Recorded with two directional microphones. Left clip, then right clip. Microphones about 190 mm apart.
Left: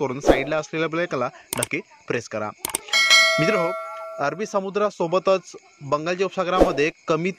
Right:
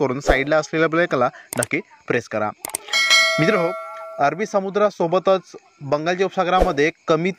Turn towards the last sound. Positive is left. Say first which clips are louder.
# right 4 dB
turn(degrees=-15)  # may be behind; listen again after turning